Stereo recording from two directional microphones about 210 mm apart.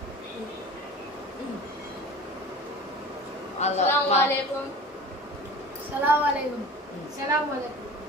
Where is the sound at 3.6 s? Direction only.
30° left (ahead or behind).